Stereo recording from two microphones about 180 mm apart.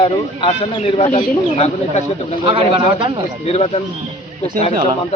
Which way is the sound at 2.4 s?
30° right (ahead or behind).